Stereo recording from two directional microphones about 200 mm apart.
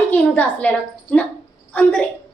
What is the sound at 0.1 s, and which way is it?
Speech, 5° left (ahead or behind).